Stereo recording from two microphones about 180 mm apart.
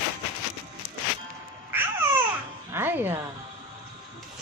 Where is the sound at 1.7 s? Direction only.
10° right (ahead or behind).